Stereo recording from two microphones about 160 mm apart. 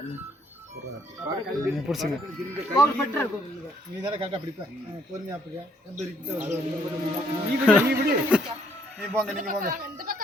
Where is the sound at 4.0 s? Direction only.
30° right (ahead or behind).